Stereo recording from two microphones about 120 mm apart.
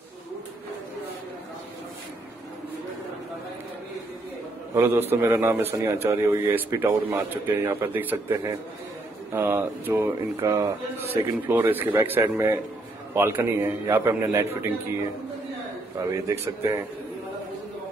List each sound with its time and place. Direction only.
4.7 s a man's voice: 20° right (ahead or behind)
10.3 s a man's voice: 30° right (ahead or behind)
16.0 s a man's voice: 25° right (ahead or behind)